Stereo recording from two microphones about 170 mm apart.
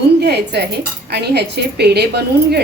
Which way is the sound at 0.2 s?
75° right (ahead or behind).